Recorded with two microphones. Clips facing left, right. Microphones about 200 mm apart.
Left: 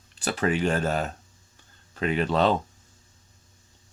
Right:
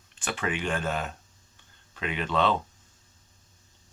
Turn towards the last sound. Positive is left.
turn(degrees=40)  # may be behind; listen again after turning